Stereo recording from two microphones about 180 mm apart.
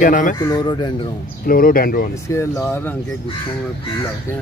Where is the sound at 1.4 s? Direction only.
55° left (ahead or behind).